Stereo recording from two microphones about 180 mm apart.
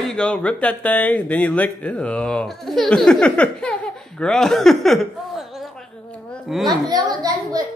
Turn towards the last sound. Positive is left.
turn(degrees=-20)  # may be behind; listen again after turning